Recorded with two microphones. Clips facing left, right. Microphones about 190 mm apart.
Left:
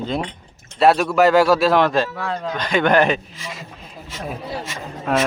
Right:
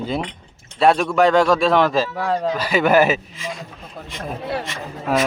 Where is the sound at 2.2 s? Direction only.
40° right (ahead or behind).